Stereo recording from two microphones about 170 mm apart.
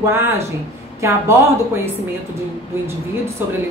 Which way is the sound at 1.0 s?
15° right (ahead or behind).